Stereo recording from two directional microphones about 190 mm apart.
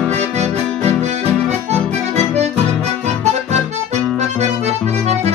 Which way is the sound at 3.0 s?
35° right (ahead or behind).